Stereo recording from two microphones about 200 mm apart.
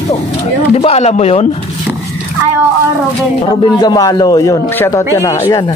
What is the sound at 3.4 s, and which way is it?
Speech, 20° left (ahead or behind).